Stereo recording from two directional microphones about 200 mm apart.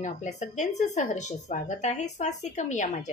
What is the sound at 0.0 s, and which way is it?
A woman's voice, 35° left (ahead or behind).